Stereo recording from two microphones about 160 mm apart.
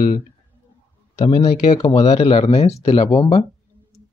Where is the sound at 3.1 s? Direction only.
25° left (ahead or behind).